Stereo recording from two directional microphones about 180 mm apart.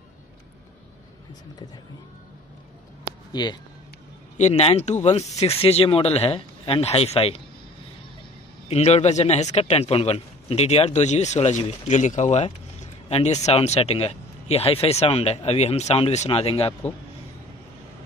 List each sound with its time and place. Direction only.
3.4 s speech: 25° left (ahead or behind)
4.4 s speech: 40° left (ahead or behind)
8.6 s speech: 35° left (ahead or behind)